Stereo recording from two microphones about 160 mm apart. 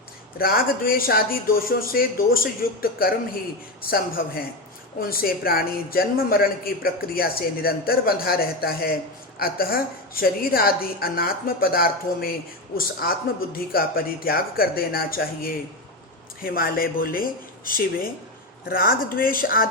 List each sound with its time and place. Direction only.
0.3 s speech: 70° left (ahead or behind)